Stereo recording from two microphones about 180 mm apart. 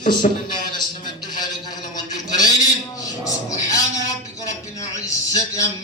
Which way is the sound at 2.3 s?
20° left (ahead or behind).